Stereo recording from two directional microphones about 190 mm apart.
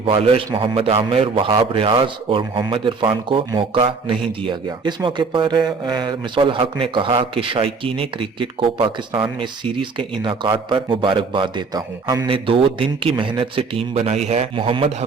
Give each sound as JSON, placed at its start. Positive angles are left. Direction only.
{"t": 0.0, "sound": "speech", "side_deg": -30}